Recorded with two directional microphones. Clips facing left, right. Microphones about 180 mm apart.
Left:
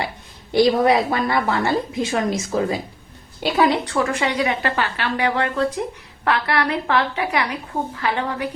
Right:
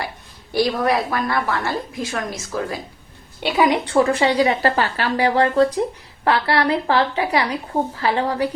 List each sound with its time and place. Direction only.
0.5 s a woman's voice: 20° left (ahead or behind)
3.4 s a woman's voice: centre (ahead or behind)
3.8 s a woman's voice: 30° right (ahead or behind)